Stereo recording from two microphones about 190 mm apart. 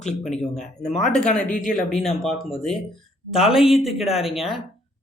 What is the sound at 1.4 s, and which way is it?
Speech, 45° left (ahead or behind).